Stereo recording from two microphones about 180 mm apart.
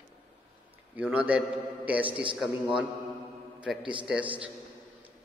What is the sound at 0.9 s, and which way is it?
A man's voice, 5° right (ahead or behind).